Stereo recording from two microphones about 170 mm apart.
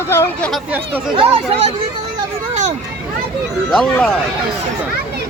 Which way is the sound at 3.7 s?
5° left (ahead or behind).